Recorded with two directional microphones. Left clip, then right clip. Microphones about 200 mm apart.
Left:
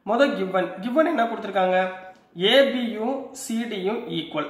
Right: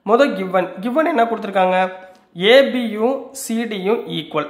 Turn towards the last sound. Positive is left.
turn(degrees=-40)  # may be behind; listen again after turning